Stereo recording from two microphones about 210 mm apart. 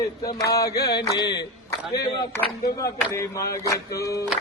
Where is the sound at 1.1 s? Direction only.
20° left (ahead or behind).